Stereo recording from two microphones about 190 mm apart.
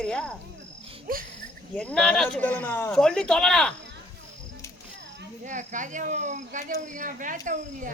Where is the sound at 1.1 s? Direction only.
50° right (ahead or behind).